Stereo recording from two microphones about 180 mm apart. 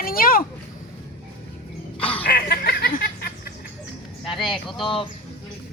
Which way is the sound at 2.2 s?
55° left (ahead or behind).